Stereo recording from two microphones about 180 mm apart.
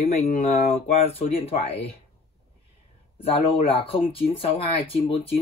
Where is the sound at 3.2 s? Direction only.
30° left (ahead or behind).